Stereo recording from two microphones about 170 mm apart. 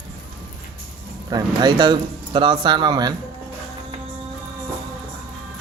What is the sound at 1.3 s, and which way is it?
Speech, 25° right (ahead or behind).